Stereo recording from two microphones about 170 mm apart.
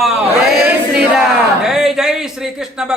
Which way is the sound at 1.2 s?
5° right (ahead or behind).